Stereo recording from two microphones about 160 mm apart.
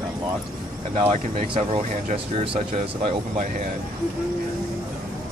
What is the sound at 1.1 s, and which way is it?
Speech, 40° right (ahead or behind).